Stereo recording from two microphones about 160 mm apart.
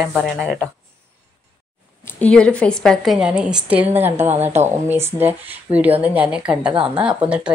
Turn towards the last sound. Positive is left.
turn(degrees=-10)  # may be behind; listen again after turning